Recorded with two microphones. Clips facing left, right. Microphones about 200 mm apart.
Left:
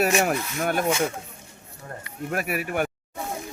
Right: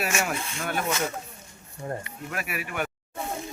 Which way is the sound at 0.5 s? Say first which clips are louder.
Left 5 dB; 50° left (ahead or behind).